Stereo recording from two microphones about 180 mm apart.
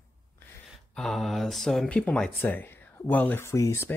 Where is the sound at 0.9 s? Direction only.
Centre (ahead or behind).